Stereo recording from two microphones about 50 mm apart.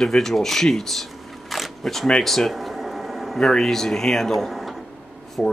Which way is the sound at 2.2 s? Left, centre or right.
Centre.